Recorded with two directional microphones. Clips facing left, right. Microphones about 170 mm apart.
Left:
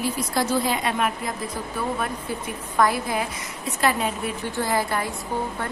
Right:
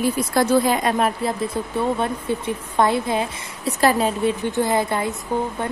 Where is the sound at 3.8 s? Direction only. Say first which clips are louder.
Right 5 dB; 35° right (ahead or behind).